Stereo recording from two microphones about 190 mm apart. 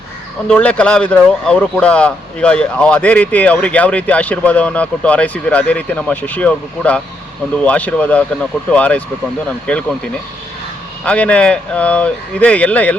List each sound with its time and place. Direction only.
0.4 s speech: 5° left (ahead or behind)